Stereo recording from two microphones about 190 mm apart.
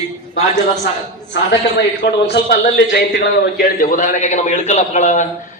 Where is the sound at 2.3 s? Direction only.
55° left (ahead or behind).